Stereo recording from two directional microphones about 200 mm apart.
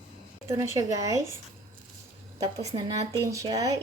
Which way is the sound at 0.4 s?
15° right (ahead or behind).